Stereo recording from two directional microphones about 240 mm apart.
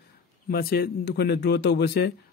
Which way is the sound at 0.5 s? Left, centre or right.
Left.